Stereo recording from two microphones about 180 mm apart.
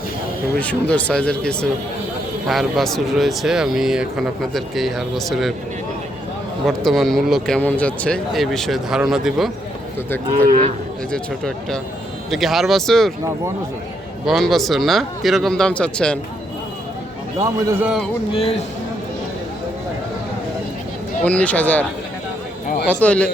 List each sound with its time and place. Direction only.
0.6 s speech: 5° left (ahead or behind)
6.7 s speech: centre (ahead or behind)
10.3 s speech: 45° right (ahead or behind)
11.1 s speech: 5° left (ahead or behind)
14.3 s speech: centre (ahead or behind)
17.4 s a man's voice: 15° right (ahead or behind)
21.2 s speech: 10° left (ahead or behind)
22.9 s speech: 10° left (ahead or behind)